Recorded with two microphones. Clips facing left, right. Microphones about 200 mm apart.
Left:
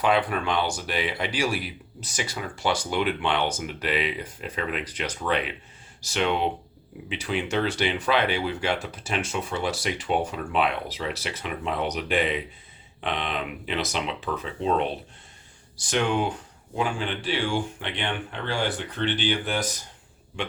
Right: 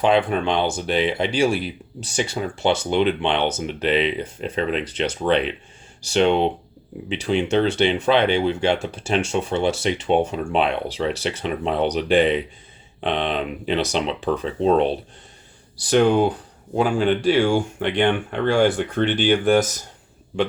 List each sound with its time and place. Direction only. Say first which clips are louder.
0.0 s speech: right 5 dB; 25° right (ahead or behind); by 19.7 s 45° right (ahead or behind)